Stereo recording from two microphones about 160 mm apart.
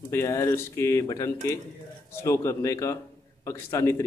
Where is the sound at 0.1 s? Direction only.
15° left (ahead or behind).